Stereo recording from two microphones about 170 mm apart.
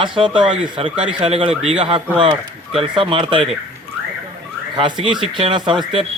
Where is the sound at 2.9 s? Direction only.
30° right (ahead or behind).